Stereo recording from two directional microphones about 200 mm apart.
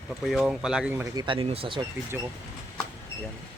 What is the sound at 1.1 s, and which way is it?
Speech, 25° right (ahead or behind).